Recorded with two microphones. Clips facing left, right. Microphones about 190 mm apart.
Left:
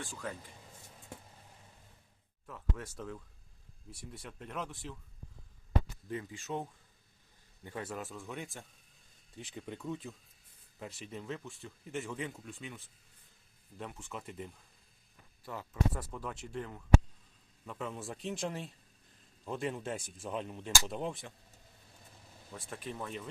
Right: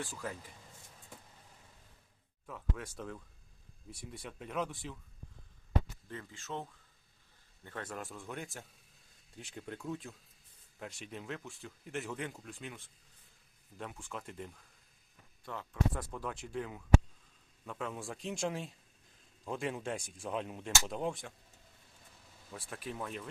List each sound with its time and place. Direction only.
2.5 s speech: centre (ahead or behind)
6.1 s speech: 15° left (ahead or behind); by 21.3 s centre (ahead or behind)
22.7 s speech: centre (ahead or behind)